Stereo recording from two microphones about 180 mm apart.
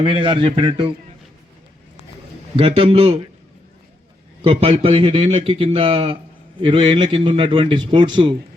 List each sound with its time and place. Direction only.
0.0 s a man's voice: 25° right (ahead or behind)
2.6 s a man's voice: 30° right (ahead or behind)
4.4 s a man's voice: 30° right (ahead or behind)